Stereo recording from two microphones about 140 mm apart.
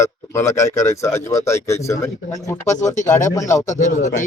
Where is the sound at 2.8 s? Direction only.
60° left (ahead or behind).